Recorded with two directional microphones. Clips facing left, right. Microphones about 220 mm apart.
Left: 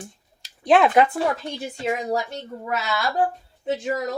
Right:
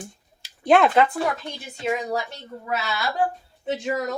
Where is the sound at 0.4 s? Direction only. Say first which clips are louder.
Even; centre (ahead or behind).